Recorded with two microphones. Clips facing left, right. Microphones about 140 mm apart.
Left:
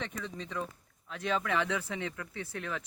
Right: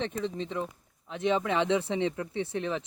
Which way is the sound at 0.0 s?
25° right (ahead or behind).